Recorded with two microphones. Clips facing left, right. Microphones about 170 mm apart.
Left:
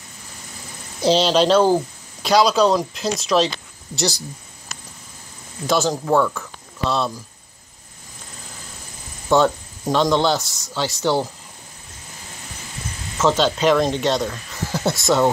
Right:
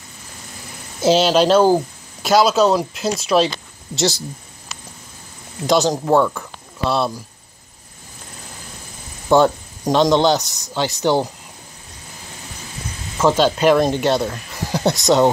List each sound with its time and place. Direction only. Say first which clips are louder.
1.0 s speech: right 2 dB; 5° right (ahead or behind)
3.9 s speech: right 4 dB; 25° right (ahead or behind)
4.7 s a sound: right 1 dB; 45° left (ahead or behind)
5.7 s speech: right 3 dB; 20° right (ahead or behind)
6.8 s speech: right 2 dB; 10° right (ahead or behind)
9.3 s speech: right 3 dB; 15° right (ahead or behind)
13.2 s speech: right 3 dB; 10° right (ahead or behind)